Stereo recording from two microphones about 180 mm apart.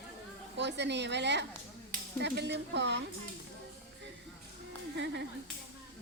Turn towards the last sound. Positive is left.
turn(degrees=-75)  # may be behind; listen again after turning